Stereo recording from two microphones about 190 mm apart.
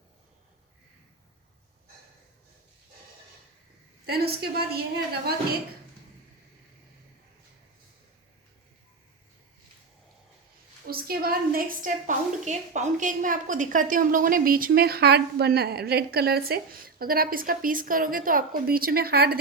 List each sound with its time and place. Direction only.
4.0 s a woman's voice: 55° right (ahead or behind)
10.8 s a woman's voice: 50° right (ahead or behind)